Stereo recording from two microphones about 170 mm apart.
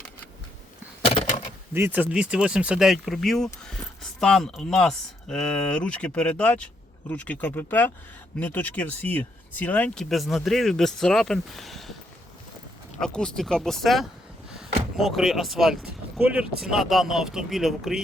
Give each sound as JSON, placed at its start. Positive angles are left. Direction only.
{"t": 1.0, "sound": "a sound", "side_deg": 40}
{"t": 1.7, "sound": "speech", "side_deg": -10}
{"t": 13.0, "sound": "speech", "side_deg": 5}